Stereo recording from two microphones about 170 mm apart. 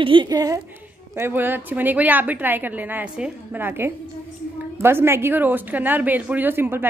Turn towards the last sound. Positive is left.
turn(degrees=-10)  # may be behind; listen again after turning